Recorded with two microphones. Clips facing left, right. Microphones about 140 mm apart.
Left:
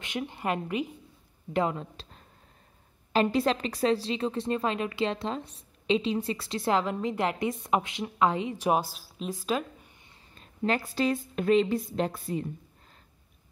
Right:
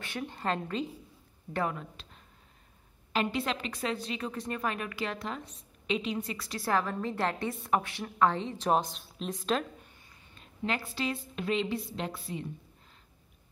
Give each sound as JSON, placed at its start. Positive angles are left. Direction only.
{"t": 0.0, "sound": "a woman's voice", "side_deg": 15}
{"t": 3.1, "sound": "a woman's voice", "side_deg": 35}
{"t": 10.3, "sound": "a woman's voice", "side_deg": 40}